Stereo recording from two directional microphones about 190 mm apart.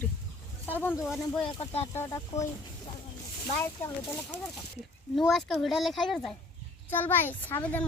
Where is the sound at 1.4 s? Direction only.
30° left (ahead or behind).